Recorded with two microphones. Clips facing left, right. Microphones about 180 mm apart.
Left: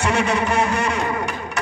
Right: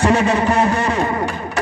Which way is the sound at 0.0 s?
35° right (ahead or behind).